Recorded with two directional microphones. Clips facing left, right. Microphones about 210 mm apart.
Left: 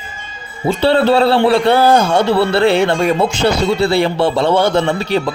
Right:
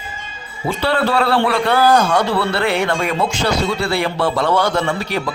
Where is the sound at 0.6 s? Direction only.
25° left (ahead or behind).